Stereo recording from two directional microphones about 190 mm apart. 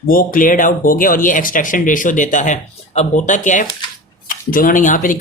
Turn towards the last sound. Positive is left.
turn(degrees=45)  # may be behind; listen again after turning